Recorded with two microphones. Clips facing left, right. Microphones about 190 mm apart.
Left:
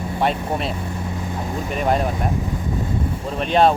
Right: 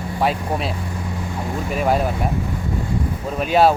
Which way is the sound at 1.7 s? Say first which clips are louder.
Right 1 dB; 5° right (ahead or behind).